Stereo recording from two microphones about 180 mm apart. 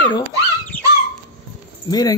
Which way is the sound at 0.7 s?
10° left (ahead or behind).